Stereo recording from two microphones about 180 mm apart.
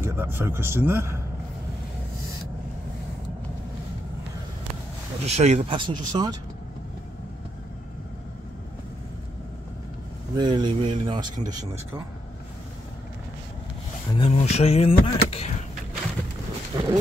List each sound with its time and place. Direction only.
0.0 s a man's voice: 10° right (ahead or behind)
5.2 s speech: 40° right (ahead or behind)
10.3 s speech: 25° right (ahead or behind)
14.1 s a sound: 35° left (ahead or behind)